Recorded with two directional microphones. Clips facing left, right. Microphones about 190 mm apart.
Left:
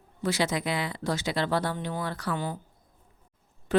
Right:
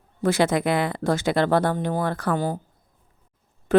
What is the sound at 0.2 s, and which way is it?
A woman's voice, 50° right (ahead or behind).